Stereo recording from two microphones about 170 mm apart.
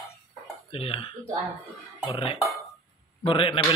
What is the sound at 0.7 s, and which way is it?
Speech, 35° left (ahead or behind).